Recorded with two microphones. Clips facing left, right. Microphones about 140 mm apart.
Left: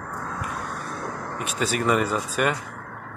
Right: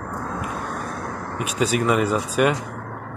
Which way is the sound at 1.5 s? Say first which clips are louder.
Right 3 dB; 5° right (ahead or behind).